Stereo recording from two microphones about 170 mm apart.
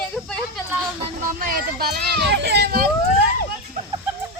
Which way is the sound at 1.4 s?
60° right (ahead or behind).